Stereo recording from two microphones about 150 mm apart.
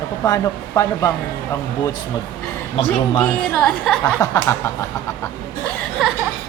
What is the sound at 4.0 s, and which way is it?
Speech, 25° left (ahead or behind).